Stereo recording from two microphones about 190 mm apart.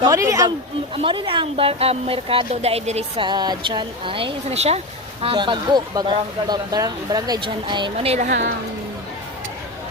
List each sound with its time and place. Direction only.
0.0 s a woman's voice: 15° right (ahead or behind); by 8.3 s 35° right (ahead or behind)
8.3 s a woman's voice: 65° right (ahead or behind)